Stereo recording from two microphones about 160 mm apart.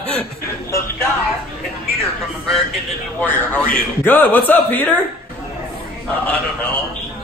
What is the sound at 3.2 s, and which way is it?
A man's voice, 10° left (ahead or behind).